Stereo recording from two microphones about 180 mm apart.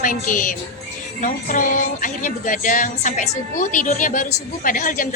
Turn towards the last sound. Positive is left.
turn(degrees=50)  # may be behind; listen again after turning